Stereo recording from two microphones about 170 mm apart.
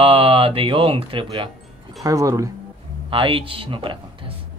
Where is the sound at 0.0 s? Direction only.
35° right (ahead or behind).